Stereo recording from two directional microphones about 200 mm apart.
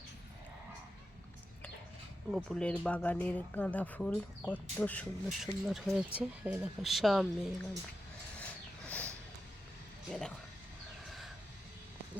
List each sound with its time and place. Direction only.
2.3 s speech: 5° left (ahead or behind)
8.9 s a sound: 5° left (ahead or behind)
10.1 s speech: 5° left (ahead or behind)